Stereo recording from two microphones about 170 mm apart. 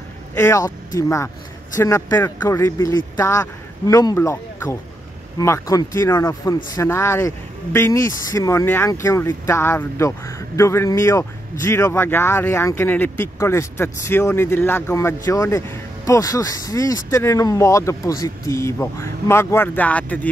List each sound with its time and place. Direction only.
0.3 s speech: 15° left (ahead or behind)